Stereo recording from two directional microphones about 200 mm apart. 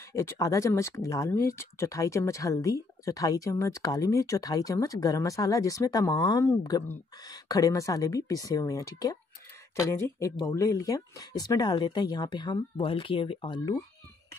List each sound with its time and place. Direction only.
0.1 s speech: 15° left (ahead or behind)